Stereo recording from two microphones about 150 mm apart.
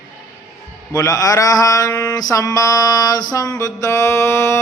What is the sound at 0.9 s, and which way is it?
Mantra, 25° left (ahead or behind).